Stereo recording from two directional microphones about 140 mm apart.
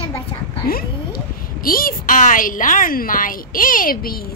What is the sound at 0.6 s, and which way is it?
A woman's voice, 90° left.